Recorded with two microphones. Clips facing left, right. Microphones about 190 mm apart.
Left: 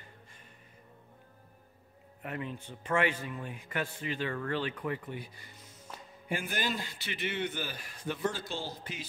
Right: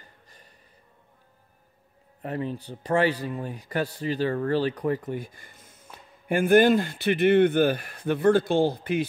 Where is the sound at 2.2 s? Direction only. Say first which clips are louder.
Right 8 dB; 35° right (ahead or behind).